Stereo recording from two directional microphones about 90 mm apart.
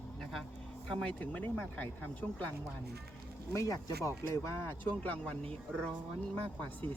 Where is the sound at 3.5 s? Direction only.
40° left (ahead or behind).